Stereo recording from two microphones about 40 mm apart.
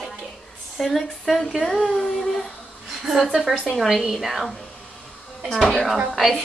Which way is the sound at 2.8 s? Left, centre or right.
Centre.